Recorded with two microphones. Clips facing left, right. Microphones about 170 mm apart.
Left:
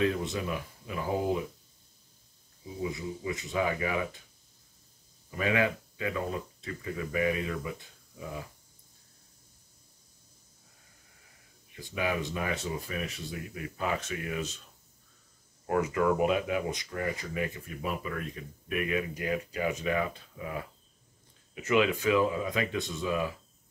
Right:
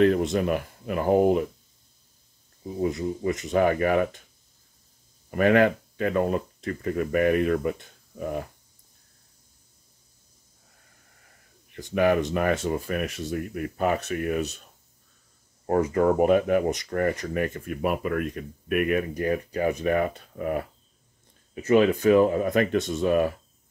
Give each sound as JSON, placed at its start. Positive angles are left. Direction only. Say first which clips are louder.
{"t": 0.0, "sound": "speech", "louder": "right 9 dB", "side_deg": -60}
{"t": 2.6, "sound": "speech", "louder": "right 8 dB", "side_deg": -50}
{"t": 5.3, "sound": "speech", "louder": "right 9 dB", "side_deg": -60}
{"t": 11.8, "sound": "speech", "louder": "right 10 dB", "side_deg": -60}
{"t": 14.4, "sound": "speech", "louder": "right 6 dB", "side_deg": -65}
{"t": 15.6, "sound": "speech", "louder": "right 6 dB", "side_deg": -35}
{"t": 21.5, "sound": "speech", "louder": "right 7 dB", "side_deg": -40}
{"t": 22.9, "sound": "speech", "louder": "right 9 dB", "side_deg": -55}